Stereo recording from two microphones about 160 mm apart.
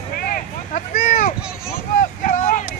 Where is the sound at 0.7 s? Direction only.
50° left (ahead or behind).